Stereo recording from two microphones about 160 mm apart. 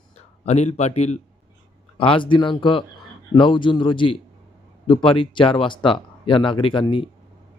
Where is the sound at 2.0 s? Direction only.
30° left (ahead or behind).